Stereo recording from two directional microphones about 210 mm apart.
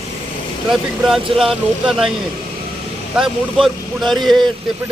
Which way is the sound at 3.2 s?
Centre (ahead or behind).